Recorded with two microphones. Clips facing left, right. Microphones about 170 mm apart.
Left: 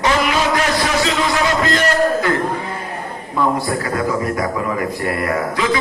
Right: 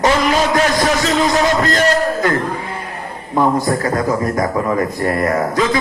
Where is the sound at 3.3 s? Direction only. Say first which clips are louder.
Right 3 dB; 40° right (ahead or behind).